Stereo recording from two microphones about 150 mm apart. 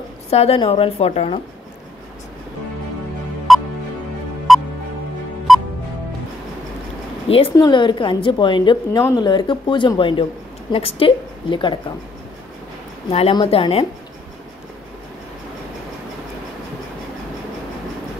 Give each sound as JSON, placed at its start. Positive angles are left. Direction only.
{"t": 0.3, "sound": "a woman's voice", "side_deg": 45}
{"t": 3.5, "sound": "music", "side_deg": 0}
{"t": 7.2, "sound": "a woman's voice", "side_deg": 40}
{"t": 13.1, "sound": "a woman's voice", "side_deg": 35}